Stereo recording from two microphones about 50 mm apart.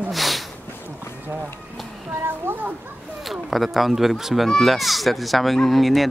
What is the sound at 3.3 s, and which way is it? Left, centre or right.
Speech, centre.